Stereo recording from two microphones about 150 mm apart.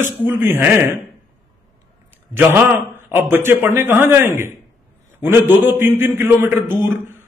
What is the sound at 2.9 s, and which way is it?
A man's voice, 15° right (ahead or behind).